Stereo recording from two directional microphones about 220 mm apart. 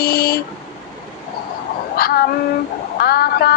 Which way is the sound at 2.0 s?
45° left (ahead or behind).